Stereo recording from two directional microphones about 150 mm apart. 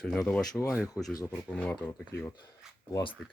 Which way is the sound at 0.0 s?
5° left (ahead or behind).